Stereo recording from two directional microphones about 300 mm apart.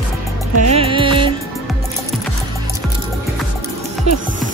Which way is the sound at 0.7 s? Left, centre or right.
Centre.